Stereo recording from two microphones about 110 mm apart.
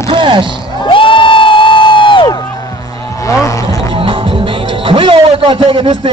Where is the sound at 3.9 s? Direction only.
55° right (ahead or behind).